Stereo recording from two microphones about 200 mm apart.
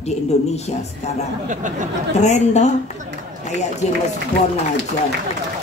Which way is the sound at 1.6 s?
40° right (ahead or behind).